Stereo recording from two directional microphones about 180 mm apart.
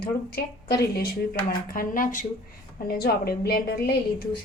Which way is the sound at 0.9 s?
55° left (ahead or behind).